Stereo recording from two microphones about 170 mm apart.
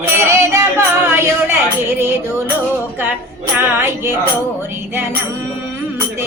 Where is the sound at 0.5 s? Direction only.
15° right (ahead or behind).